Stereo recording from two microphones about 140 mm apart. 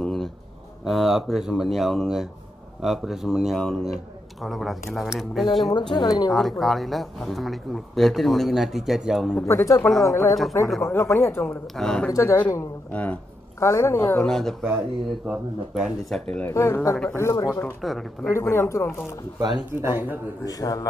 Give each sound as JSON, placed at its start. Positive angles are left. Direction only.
{"t": 0.0, "sound": "a sound", "side_deg": 5}
{"t": 0.8, "sound": "speech", "side_deg": 0}
{"t": 5.7, "sound": "speech", "side_deg": 30}
{"t": 6.3, "sound": "speech", "side_deg": 0}
{"t": 9.5, "sound": "speech", "side_deg": 20}
{"t": 11.4, "sound": "speech", "side_deg": 5}
{"t": 12.1, "sound": "speech", "side_deg": 20}
{"t": 14.3, "sound": "speech", "side_deg": 5}
{"t": 16.3, "sound": "speech", "side_deg": 15}
{"t": 17.8, "sound": "speech", "side_deg": 0}
{"t": 18.2, "sound": "speech", "side_deg": 20}
{"t": 19.4, "sound": "speech", "side_deg": -15}
{"t": 20.4, "sound": "speech", "side_deg": 25}